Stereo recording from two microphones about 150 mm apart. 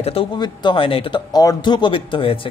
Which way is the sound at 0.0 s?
35° left (ahead or behind).